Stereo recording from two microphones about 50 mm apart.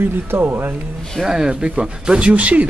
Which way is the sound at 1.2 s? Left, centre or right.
Centre.